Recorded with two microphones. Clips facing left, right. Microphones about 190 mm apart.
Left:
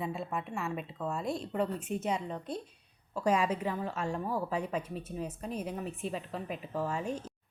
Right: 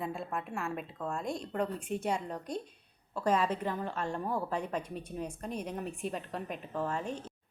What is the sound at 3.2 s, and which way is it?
A woman's voice, 10° left (ahead or behind).